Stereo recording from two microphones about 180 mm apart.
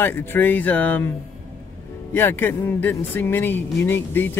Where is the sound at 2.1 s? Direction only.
10° left (ahead or behind).